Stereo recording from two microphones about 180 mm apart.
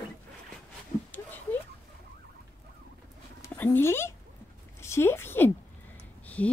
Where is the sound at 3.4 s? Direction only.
10° left (ahead or behind).